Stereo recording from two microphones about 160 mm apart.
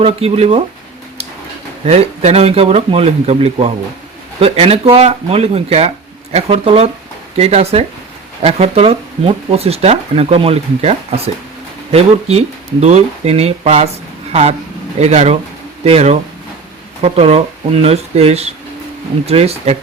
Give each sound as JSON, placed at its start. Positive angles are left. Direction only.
{"t": 0.0, "sound": "speech", "side_deg": -40}
{"t": 1.8, "sound": "speech", "side_deg": -40}
{"t": 14.9, "sound": "speech", "side_deg": -45}